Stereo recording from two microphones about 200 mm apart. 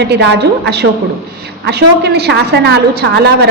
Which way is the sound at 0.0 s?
55° right (ahead or behind).